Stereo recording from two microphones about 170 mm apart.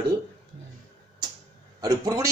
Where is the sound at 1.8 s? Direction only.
25° right (ahead or behind).